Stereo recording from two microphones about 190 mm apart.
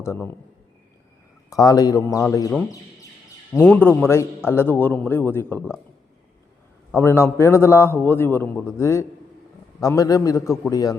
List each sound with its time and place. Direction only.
0.0 s a man's voice: 15° left (ahead or behind)
1.5 s a man's voice: 20° left (ahead or behind)
3.6 s a man's voice: 10° left (ahead or behind)
6.9 s a man's voice: 15° left (ahead or behind)